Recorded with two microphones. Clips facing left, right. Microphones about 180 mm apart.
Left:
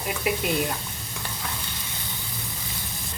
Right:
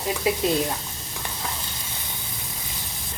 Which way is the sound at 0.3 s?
25° right (ahead or behind).